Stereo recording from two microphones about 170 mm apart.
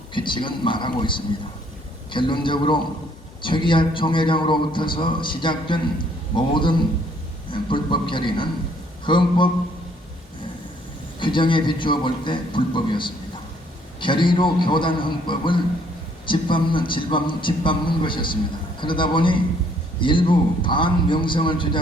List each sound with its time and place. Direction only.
0.1 s a man's voice: 30° left (ahead or behind)
11.2 s a man's voice: 30° left (ahead or behind)